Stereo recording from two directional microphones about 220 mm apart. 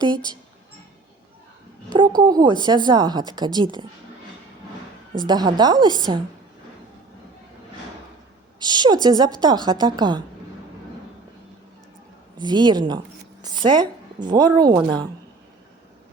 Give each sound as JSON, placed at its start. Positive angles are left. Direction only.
{"t": 1.9, "sound": "speech", "side_deg": -20}
{"t": 5.1, "sound": "speech", "side_deg": -20}
{"t": 8.5, "sound": "speech", "side_deg": -20}
{"t": 12.4, "sound": "a woman's voice", "side_deg": -20}